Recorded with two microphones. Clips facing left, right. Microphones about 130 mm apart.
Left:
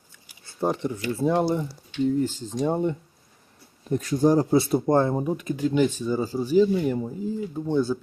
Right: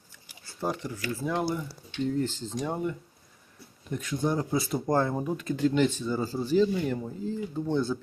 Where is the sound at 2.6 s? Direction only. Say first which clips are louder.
Left 7 dB; 25° left (ahead or behind).